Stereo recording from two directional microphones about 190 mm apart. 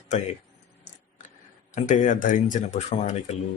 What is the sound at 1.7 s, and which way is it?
Speech, 40° left (ahead or behind).